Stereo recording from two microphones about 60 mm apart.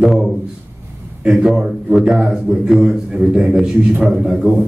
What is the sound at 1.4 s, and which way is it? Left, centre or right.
A man's voice, centre.